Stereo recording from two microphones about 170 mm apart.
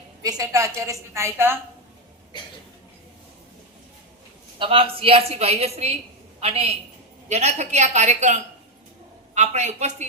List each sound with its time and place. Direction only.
0.2 s a woman's voice: 20° right (ahead or behind)
4.6 s a woman's voice: 30° right (ahead or behind)